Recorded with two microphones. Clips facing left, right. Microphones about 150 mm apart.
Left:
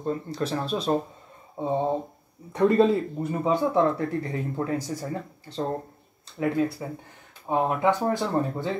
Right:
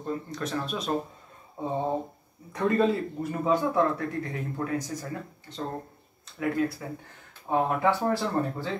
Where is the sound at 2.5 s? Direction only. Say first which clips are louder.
Left 5 dB; 25° left (ahead or behind).